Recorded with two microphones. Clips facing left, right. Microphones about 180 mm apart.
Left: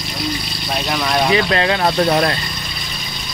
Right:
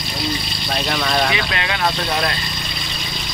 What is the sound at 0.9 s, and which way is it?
Speech, 5° left (ahead or behind).